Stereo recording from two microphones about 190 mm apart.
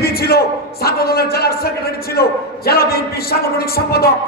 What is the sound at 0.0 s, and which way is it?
A man's voice, 55° left (ahead or behind).